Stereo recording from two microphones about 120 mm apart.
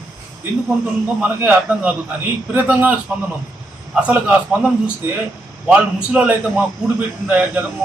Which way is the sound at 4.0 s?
10° right (ahead or behind).